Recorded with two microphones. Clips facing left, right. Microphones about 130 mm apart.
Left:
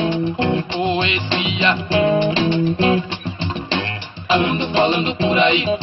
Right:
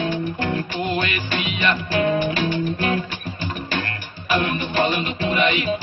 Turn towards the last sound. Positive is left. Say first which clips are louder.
# left 4 dB
turn(degrees=25)  # may be behind; listen again after turning